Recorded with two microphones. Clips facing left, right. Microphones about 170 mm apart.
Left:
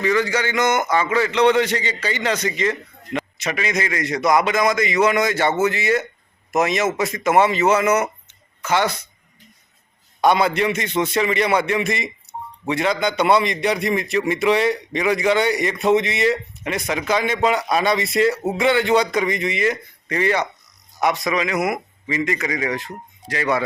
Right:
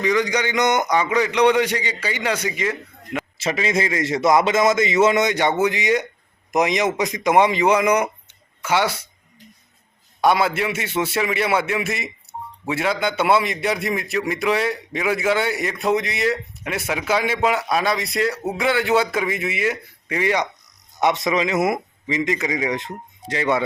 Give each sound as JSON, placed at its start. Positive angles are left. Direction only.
{"t": 0.0, "sound": "a man's voice", "side_deg": -15}
{"t": 3.3, "sound": "a man's voice", "side_deg": -25}
{"t": 10.2, "sound": "a man's voice", "side_deg": -5}
{"t": 21.2, "sound": "a man's voice", "side_deg": -25}